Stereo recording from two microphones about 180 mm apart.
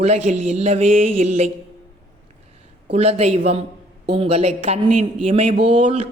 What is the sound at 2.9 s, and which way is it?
Speech, 35° right (ahead or behind).